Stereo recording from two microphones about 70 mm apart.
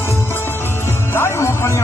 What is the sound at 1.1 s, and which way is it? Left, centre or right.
Music, left.